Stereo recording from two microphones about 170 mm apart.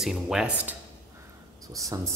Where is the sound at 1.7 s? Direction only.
20° right (ahead or behind).